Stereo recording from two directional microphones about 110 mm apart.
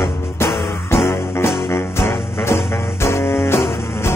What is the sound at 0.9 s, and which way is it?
Music, 25° left (ahead or behind).